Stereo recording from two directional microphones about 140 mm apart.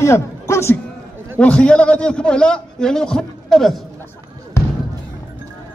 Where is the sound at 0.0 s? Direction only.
20° left (ahead or behind).